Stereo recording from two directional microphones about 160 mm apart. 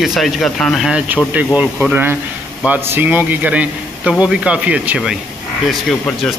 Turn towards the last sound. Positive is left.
turn(degrees=0)  # may be behind; listen again after turning